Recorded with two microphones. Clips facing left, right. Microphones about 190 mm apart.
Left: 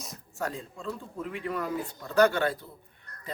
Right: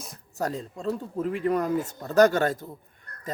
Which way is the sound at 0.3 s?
40° right (ahead or behind).